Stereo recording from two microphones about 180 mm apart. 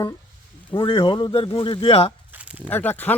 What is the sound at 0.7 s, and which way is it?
Speech, 30° left (ahead or behind).